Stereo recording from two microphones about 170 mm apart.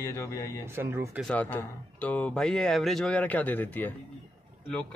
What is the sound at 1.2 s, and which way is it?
Speech, 5° left (ahead or behind).